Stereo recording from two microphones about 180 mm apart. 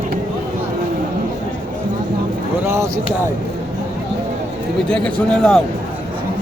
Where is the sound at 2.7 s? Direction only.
15° right (ahead or behind).